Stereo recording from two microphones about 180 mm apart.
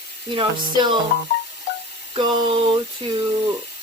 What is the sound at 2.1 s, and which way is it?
Speech, 25° right (ahead or behind).